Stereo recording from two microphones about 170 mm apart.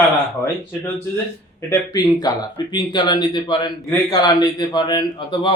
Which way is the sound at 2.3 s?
20° left (ahead or behind).